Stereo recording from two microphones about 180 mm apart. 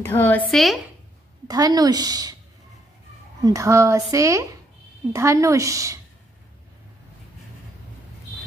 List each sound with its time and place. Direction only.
0.0 s a woman's voice: 10° left (ahead or behind)
0.5 s speech: centre (ahead or behind)
1.5 s a woman's voice: 20° right (ahead or behind)
3.4 s speech: 15° right (ahead or behind)